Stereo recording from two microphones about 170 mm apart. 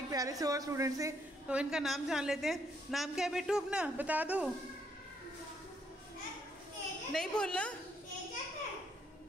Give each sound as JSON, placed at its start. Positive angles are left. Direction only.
{"t": 0.1, "sound": "a woman's voice", "side_deg": -20}
{"t": 1.5, "sound": "a woman's voice", "side_deg": -5}
{"t": 7.1, "sound": "a woman's voice", "side_deg": 5}